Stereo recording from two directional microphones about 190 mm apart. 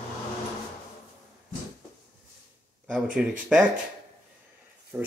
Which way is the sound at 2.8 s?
5° right (ahead or behind).